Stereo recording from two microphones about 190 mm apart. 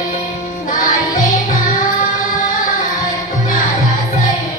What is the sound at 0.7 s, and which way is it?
Music, 45° left (ahead or behind).